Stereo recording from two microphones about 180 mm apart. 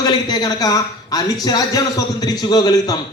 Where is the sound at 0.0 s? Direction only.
20° left (ahead or behind).